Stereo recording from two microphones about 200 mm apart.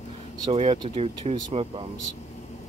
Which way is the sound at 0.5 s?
30° right (ahead or behind).